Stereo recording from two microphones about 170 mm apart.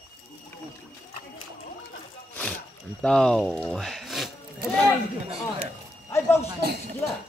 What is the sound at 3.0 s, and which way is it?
Speech, 5° left (ahead or behind).